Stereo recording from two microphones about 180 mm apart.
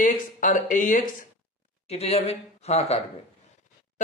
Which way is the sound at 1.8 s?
35° left (ahead or behind).